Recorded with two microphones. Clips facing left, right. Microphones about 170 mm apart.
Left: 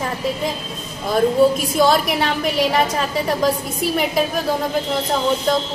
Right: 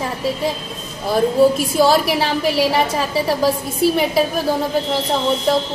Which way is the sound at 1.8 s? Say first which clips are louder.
Right 1 dB; 5° right (ahead or behind).